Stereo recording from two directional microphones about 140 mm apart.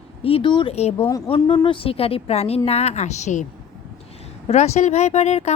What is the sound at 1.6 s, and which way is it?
A woman's voice, 40° left (ahead or behind).